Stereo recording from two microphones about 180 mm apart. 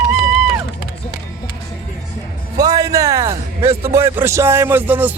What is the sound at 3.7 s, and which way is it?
Music, 30° right (ahead or behind).